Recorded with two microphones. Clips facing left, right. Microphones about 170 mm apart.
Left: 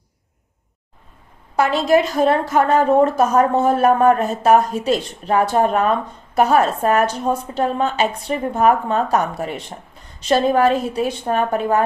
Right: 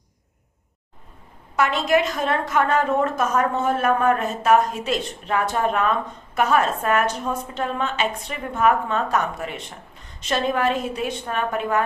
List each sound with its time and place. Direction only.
1.5 s a woman's voice: 35° left (ahead or behind)